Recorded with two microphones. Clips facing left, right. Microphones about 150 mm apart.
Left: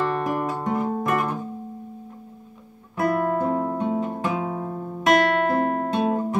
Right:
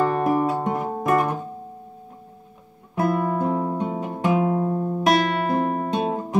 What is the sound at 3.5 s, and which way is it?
Music, 15° right (ahead or behind).